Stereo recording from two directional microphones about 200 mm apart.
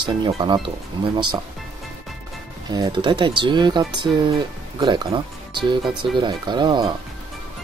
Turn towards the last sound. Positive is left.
turn(degrees=-20)  # may be behind; listen again after turning